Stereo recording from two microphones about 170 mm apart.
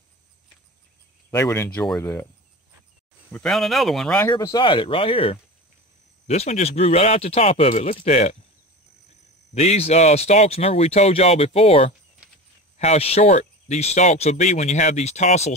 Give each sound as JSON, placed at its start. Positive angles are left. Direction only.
{"t": 1.3, "sound": "speech", "side_deg": 15}
{"t": 3.3, "sound": "speech", "side_deg": 5}
{"t": 4.2, "sound": "speech", "side_deg": 15}
{"t": 4.6, "sound": "speech", "side_deg": 30}
{"t": 9.5, "sound": "speech", "side_deg": 40}